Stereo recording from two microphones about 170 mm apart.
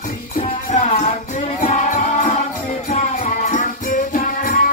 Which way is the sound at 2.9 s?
45° left (ahead or behind).